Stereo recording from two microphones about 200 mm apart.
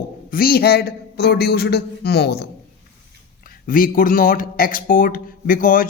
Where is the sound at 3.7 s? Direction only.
45° left (ahead or behind).